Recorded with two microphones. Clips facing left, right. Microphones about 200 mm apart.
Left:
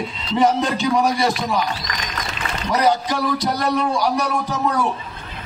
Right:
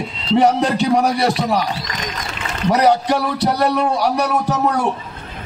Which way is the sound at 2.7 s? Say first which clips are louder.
Right 3 dB; 65° right (ahead or behind).